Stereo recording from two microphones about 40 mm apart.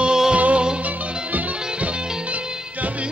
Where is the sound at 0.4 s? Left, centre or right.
Right.